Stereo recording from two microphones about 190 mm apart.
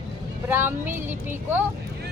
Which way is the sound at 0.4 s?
10° right (ahead or behind).